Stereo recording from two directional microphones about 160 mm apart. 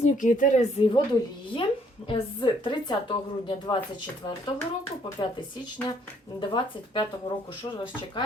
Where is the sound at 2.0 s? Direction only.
30° left (ahead or behind).